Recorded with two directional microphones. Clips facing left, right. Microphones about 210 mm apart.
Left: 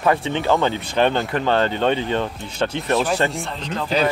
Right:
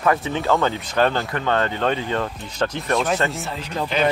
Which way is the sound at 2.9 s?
Centre (ahead or behind).